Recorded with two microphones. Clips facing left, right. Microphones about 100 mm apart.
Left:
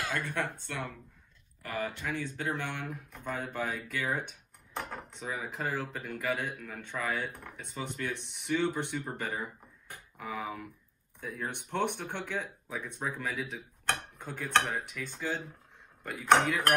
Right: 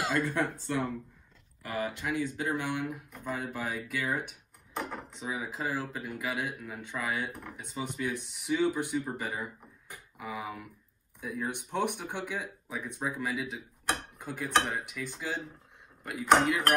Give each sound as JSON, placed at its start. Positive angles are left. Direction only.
{"t": 0.2, "sound": "speech", "side_deg": 60}
{"t": 1.6, "sound": "speech", "side_deg": -15}
{"t": 9.8, "sound": "a sound", "side_deg": -10}
{"t": 11.1, "sound": "speech", "side_deg": -10}